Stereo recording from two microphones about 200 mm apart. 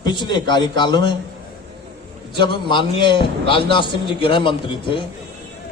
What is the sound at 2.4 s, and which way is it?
A man's voice, 25° left (ahead or behind).